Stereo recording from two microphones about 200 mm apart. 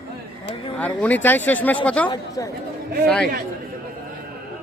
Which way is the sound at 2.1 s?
15° left (ahead or behind).